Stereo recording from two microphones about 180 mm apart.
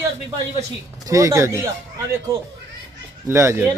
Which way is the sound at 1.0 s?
20° right (ahead or behind).